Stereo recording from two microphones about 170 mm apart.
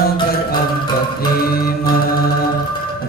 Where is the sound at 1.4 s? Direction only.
60° left (ahead or behind).